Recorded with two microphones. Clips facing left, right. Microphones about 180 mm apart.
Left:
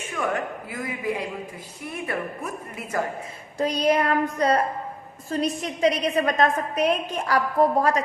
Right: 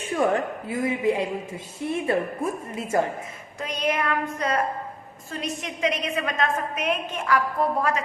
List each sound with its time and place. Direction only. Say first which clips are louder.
0.0 s speech: right 4 dB; 30° right (ahead or behind)
3.6 s a woman's voice: left 5 dB; 35° left (ahead or behind)